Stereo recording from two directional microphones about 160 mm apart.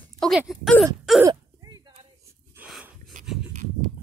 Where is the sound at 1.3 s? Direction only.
30° right (ahead or behind).